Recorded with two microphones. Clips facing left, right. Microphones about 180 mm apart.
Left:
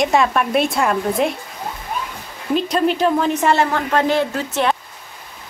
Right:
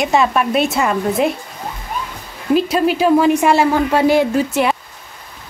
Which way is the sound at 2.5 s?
5° right (ahead or behind).